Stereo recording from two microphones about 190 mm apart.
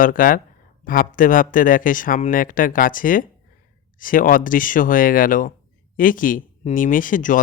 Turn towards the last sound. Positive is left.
turn(degrees=45)  # may be behind; listen again after turning